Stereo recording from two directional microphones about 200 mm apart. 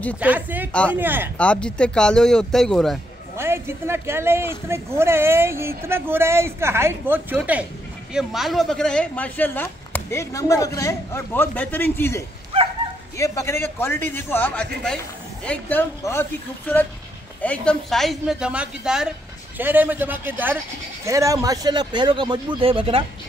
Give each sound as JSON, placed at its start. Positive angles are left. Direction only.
{"t": 0.2, "sound": "speech", "side_deg": -10}
{"t": 1.4, "sound": "speech", "side_deg": 5}
{"t": 3.3, "sound": "speech", "side_deg": -10}
{"t": 12.5, "sound": "dog", "side_deg": -30}
{"t": 13.2, "sound": "speech", "side_deg": 15}